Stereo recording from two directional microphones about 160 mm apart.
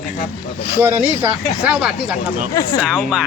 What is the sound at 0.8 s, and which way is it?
Speech, 15° right (ahead or behind).